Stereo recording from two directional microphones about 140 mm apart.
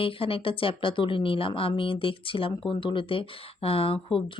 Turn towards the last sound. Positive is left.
turn(degrees=40)  # may be behind; listen again after turning